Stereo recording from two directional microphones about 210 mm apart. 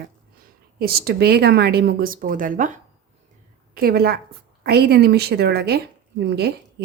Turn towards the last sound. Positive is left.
turn(degrees=-50)  # may be behind; listen again after turning